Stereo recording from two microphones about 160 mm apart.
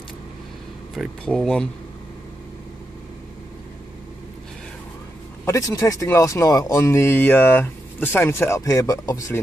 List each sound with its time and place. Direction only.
0.9 s speech: 5° left (ahead or behind)
5.4 s speech: 20° left (ahead or behind)